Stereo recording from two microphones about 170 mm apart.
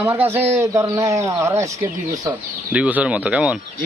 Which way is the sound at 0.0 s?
15° right (ahead or behind).